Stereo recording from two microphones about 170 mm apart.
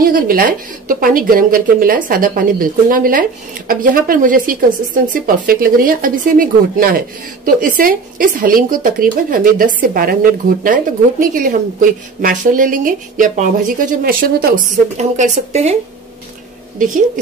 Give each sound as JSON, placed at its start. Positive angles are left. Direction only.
{"t": 0.0, "sound": "a woman's voice", "side_deg": -55}
{"t": 15.0, "sound": "speech", "side_deg": -40}
{"t": 16.7, "sound": "a woman's voice", "side_deg": -50}